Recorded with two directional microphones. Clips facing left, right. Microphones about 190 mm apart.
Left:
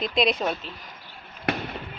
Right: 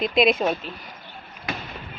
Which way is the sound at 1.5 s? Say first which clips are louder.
Left 5 dB; 65° left (ahead or behind).